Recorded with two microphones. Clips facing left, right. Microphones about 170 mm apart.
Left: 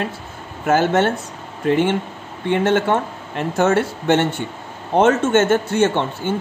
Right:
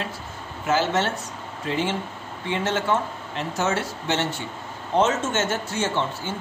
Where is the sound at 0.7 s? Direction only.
55° left (ahead or behind).